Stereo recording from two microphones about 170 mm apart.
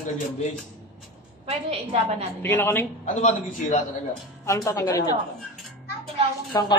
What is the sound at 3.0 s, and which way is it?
Speech, 45° left (ahead or behind).